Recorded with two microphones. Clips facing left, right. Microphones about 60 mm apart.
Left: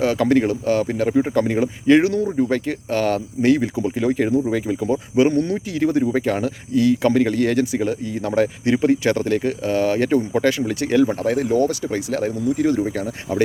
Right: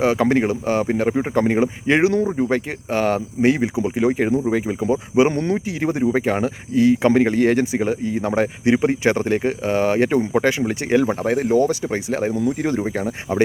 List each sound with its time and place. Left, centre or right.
0.0 s speech: right
5.3 s speech: right